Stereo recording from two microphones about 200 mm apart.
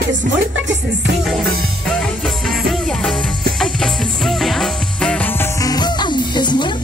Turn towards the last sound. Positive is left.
turn(degrees=20)  # may be behind; listen again after turning